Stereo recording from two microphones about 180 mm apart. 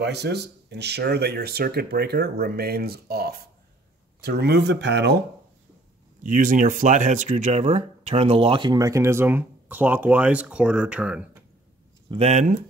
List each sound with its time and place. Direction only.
0.0 s speech: 70° right (ahead or behind)
6.2 s speech: 50° right (ahead or behind); by 11.2 s 5° right (ahead or behind)
12.1 s speech: 35° right (ahead or behind)